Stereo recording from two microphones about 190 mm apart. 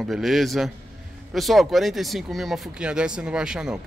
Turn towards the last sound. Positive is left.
turn(degrees=-5)  # may be behind; listen again after turning